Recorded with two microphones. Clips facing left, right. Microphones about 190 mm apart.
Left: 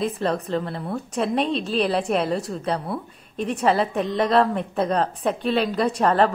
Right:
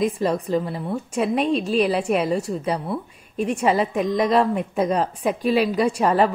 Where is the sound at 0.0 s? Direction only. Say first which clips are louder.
Right 2 dB; 10° right (ahead or behind).